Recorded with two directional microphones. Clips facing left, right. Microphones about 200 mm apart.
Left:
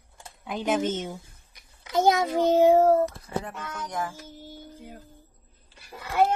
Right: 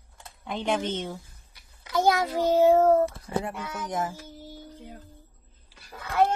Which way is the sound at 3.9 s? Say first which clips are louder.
Right 2 dB; 20° right (ahead or behind).